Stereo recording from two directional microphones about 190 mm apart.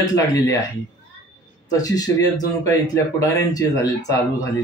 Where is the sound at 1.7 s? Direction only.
20° left (ahead or behind).